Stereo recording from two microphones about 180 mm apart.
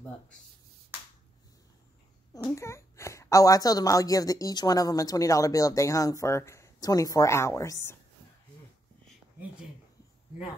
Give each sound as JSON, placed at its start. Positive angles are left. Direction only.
{"t": 2.4, "sound": "a woman's voice", "side_deg": 15}